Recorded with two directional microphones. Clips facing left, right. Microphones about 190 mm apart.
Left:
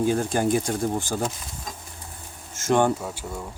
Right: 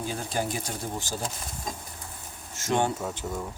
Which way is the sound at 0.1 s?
50° left (ahead or behind).